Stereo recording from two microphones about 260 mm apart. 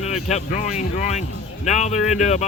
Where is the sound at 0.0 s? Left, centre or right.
Left.